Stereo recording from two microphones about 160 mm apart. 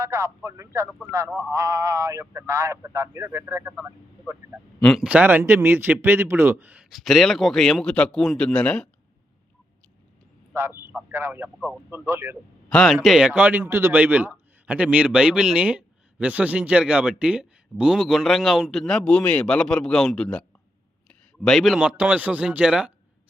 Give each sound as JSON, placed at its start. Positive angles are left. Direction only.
{"t": 0.0, "sound": "speech", "side_deg": -20}
{"t": 4.8, "sound": "a man's voice", "side_deg": 5}
{"t": 5.0, "sound": "a man's voice", "side_deg": -10}
{"t": 10.5, "sound": "a sound", "side_deg": -15}
{"t": 11.1, "sound": "speech", "side_deg": -15}
{"t": 12.6, "sound": "a man's voice", "side_deg": 5}